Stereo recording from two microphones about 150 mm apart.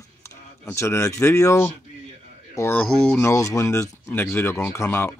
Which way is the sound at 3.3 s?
20° left (ahead or behind).